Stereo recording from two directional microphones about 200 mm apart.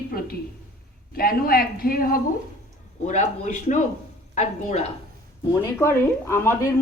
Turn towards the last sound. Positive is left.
turn(degrees=10)  # may be behind; listen again after turning